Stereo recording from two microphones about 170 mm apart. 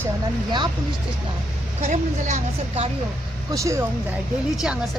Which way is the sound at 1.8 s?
45° right (ahead or behind).